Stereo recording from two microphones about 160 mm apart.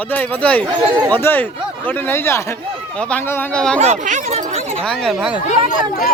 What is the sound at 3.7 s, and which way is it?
Speech, 45° right (ahead or behind).